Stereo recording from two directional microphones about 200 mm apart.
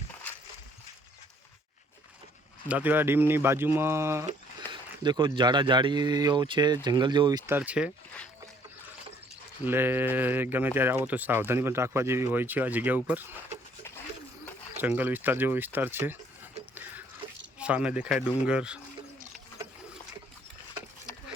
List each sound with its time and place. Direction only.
2.6 s speech: 10° right (ahead or behind)
9.6 s speech: 10° right (ahead or behind)
14.8 s speech: 10° right (ahead or behind)
16.7 s a sound: 10° right (ahead or behind)
17.2 s a sound: 25° right (ahead or behind)
17.6 s speech: 5° right (ahead or behind)